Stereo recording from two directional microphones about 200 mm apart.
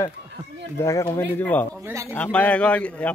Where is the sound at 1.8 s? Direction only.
15° right (ahead or behind).